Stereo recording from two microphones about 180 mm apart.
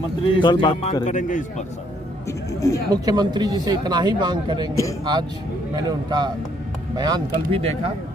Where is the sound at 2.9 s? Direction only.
20° right (ahead or behind).